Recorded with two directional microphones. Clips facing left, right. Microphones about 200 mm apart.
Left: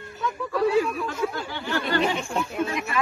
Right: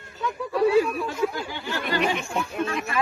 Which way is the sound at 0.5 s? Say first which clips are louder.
Right 2 dB; 25° right (ahead or behind).